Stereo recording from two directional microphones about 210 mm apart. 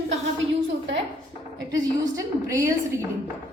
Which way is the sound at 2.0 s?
15° right (ahead or behind).